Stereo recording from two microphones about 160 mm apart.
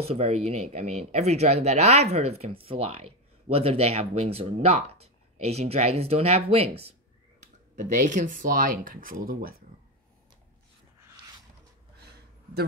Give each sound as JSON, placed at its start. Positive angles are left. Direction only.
{"t": 0.0, "sound": "speech", "side_deg": -40}
{"t": 7.7, "sound": "speech", "side_deg": -50}